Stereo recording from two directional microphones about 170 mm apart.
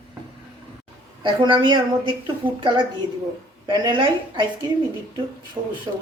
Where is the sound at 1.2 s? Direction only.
30° right (ahead or behind).